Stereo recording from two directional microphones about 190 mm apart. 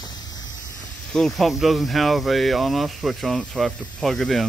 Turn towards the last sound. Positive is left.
turn(degrees=0)  # may be behind; listen again after turning